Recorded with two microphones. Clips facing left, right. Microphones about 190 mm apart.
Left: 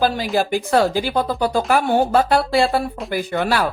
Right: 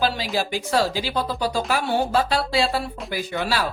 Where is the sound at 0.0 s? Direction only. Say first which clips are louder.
Left 5 dB; 50° left (ahead or behind).